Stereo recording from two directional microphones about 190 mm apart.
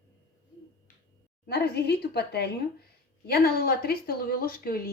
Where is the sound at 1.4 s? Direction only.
55° left (ahead or behind).